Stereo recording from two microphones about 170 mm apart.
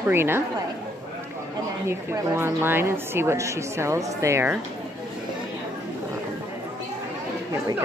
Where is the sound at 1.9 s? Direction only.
15° right (ahead or behind).